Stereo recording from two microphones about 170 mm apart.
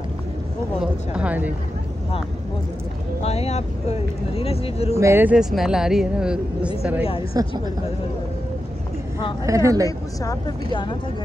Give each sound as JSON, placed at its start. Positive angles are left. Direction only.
{"t": 0.7, "sound": "speech", "side_deg": -5}
{"t": 3.2, "sound": "speech", "side_deg": 40}
{"t": 5.0, "sound": "speech", "side_deg": -10}
{"t": 7.3, "sound": "speech", "side_deg": -25}
{"t": 9.5, "sound": "speech", "side_deg": -20}
{"t": 9.8, "sound": "speech", "side_deg": 20}